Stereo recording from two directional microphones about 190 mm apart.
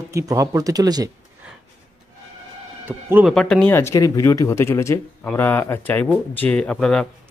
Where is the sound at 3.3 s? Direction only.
5° left (ahead or behind).